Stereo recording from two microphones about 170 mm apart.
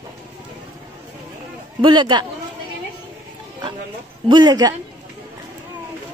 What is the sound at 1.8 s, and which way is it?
Speech, 25° right (ahead or behind).